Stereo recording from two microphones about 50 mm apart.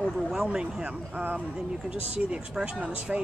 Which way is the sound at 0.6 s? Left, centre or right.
Right.